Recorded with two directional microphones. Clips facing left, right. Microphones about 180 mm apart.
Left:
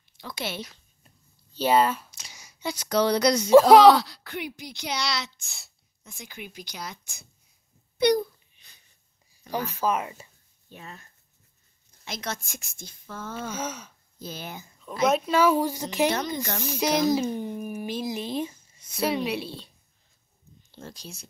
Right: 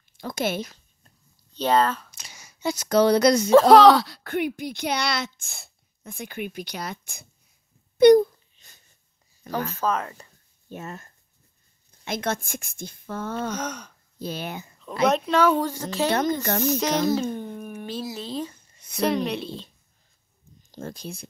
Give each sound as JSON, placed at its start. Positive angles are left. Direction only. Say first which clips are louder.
{"t": 0.2, "sound": "a woman's voice", "louder": "right 7 dB", "side_deg": -45}
{"t": 1.0, "sound": "a sound", "louder": "left 2 dB", "side_deg": 10}
{"t": 2.0, "sound": "speech", "louder": "right 2 dB", "side_deg": -55}
{"t": 8.0, "sound": "a sound", "louder": "right 9 dB", "side_deg": -45}
{"t": 9.5, "sound": "a woman's voice", "louder": "right 1 dB", "side_deg": -50}
{"t": 9.8, "sound": "speech", "louder": "left 2 dB", "side_deg": 10}
{"t": 10.7, "sound": "a woman's voice", "louder": "right 8 dB", "side_deg": -50}
{"t": 13.5, "sound": "speech", "louder": "right 2 dB", "side_deg": 5}
{"t": 14.2, "sound": "speech", "louder": "right 6 dB", "side_deg": -65}
{"t": 15.0, "sound": "speech", "louder": "right 1 dB", "side_deg": 5}
{"t": 16.1, "sound": "a woman's voice", "louder": "right 5 dB", "side_deg": -50}
{"t": 16.6, "sound": "speech", "louder": "even", "side_deg": 10}
{"t": 20.7, "sound": "a woman's voice", "louder": "right 7 dB", "side_deg": -55}